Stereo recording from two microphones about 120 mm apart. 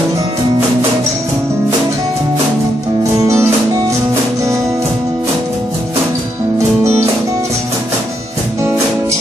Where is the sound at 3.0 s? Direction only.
25° right (ahead or behind).